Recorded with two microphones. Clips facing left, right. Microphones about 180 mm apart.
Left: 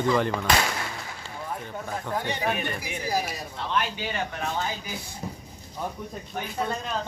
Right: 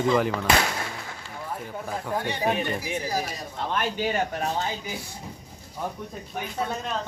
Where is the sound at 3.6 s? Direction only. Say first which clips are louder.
Right 2 dB; 45° right (ahead or behind).